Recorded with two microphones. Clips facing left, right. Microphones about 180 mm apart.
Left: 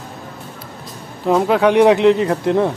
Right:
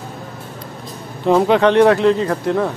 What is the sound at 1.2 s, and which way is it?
Speech, centre (ahead or behind).